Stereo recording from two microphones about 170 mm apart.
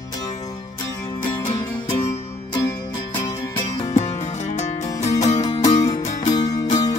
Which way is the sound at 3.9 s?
40° left (ahead or behind).